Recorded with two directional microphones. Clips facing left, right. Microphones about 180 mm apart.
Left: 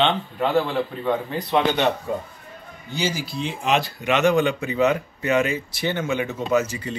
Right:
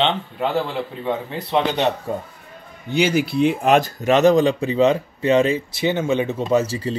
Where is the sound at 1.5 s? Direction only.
30° right (ahead or behind).